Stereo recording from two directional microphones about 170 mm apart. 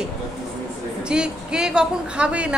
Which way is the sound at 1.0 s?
5° right (ahead or behind).